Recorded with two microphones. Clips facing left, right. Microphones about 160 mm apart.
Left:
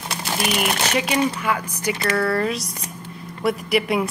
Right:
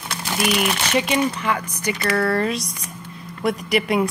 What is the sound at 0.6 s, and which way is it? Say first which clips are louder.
Speech: right 1 dB; 35° left (ahead or behind).